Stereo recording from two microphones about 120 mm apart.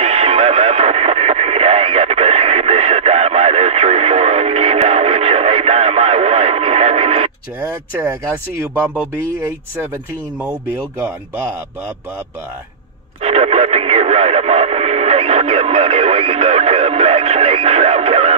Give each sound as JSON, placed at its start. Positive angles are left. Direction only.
{"t": 0.0, "sound": "radio", "side_deg": -60}
{"t": 13.2, "sound": "speech", "side_deg": -60}